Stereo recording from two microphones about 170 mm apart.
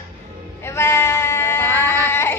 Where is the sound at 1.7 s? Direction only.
20° right (ahead or behind).